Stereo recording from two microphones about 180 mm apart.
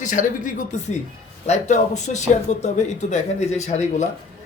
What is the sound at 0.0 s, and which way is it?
Speech, 45° left (ahead or behind).